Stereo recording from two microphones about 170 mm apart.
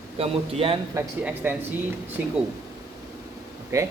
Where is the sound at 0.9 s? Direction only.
10° right (ahead or behind).